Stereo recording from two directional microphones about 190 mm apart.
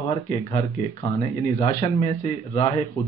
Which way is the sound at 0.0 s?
25° left (ahead or behind).